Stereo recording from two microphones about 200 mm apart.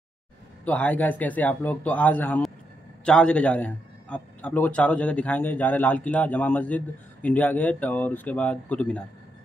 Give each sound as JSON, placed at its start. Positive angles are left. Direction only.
{"t": 0.7, "sound": "a man's voice", "side_deg": 10}